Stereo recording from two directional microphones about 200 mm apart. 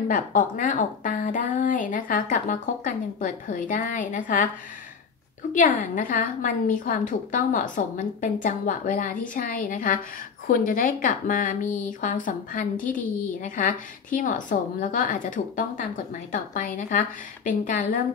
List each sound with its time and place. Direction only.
0.1 s speech: 40° left (ahead or behind)
5.5 s speech: 40° left (ahead or behind)